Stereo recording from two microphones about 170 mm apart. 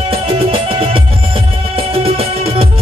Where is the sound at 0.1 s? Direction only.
35° right (ahead or behind).